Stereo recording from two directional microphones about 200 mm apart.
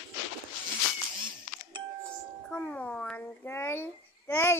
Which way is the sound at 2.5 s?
10° left (ahead or behind).